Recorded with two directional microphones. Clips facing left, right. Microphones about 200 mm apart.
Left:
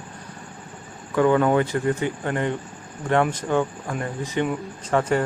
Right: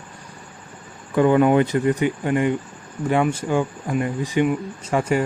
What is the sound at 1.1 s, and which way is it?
Speech, 20° right (ahead or behind).